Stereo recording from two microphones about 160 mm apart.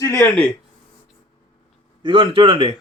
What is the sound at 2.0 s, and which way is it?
Speech, 30° right (ahead or behind).